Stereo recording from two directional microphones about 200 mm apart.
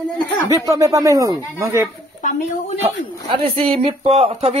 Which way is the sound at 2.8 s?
25° right (ahead or behind).